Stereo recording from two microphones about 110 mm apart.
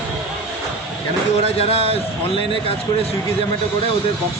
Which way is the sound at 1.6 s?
65° left (ahead or behind).